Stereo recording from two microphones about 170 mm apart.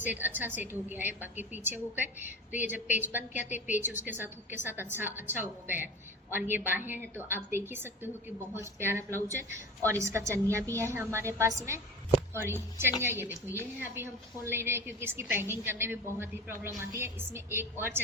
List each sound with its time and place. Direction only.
0.0 s a woman's voice: 10° right (ahead or behind)